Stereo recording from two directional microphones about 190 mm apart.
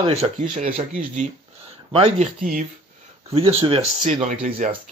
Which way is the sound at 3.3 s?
30° right (ahead or behind).